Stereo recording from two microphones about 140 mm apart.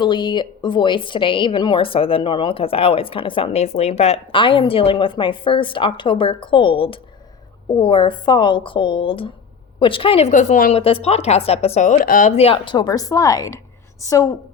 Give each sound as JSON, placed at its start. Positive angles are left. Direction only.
{"t": 0.0, "sound": "a woman's voice", "side_deg": 35}
{"t": 10.8, "sound": "a woman's voice", "side_deg": 45}
{"t": 12.4, "sound": "a woman's voice", "side_deg": 45}
{"t": 12.7, "sound": "speech", "side_deg": 30}